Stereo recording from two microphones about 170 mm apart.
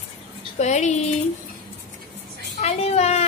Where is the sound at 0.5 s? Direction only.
45° left (ahead or behind).